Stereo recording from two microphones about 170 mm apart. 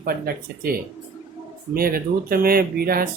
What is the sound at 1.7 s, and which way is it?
Speech, 60° right (ahead or behind).